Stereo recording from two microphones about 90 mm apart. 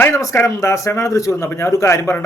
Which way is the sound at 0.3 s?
35° left (ahead or behind).